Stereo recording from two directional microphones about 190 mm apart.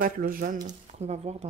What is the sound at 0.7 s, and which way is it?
Speech, 35° right (ahead or behind).